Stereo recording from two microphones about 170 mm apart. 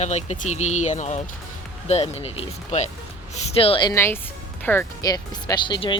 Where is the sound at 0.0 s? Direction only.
40° left (ahead or behind).